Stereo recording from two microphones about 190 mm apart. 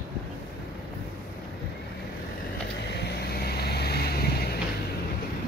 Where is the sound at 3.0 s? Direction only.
60° left (ahead or behind).